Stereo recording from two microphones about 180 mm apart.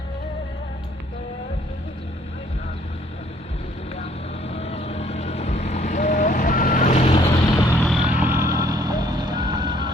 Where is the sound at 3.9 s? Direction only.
35° left (ahead or behind).